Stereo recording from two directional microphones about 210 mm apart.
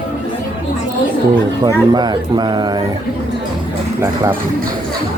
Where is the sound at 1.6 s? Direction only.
20° right (ahead or behind).